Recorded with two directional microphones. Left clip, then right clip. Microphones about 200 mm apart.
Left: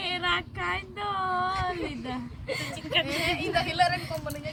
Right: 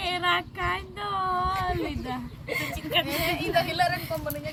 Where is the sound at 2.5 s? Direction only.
Centre (ahead or behind).